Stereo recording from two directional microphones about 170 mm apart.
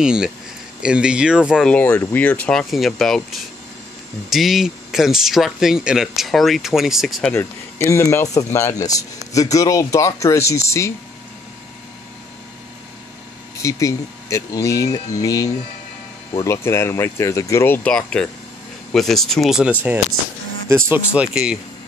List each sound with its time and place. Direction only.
0.0 s speech: 5° right (ahead or behind)
1.7 s speech: 10° left (ahead or behind)
7.3 s speech: 15° left (ahead or behind)
13.6 s speech: 20° left (ahead or behind); by 21.5 s 5° right (ahead or behind)